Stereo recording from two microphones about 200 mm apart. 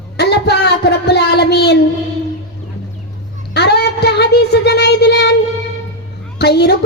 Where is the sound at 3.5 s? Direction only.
55° left (ahead or behind).